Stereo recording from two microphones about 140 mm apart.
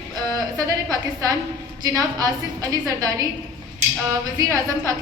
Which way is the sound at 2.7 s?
25° right (ahead or behind).